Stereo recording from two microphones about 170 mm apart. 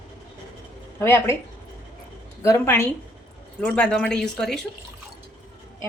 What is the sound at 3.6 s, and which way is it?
Speech, 5° left (ahead or behind).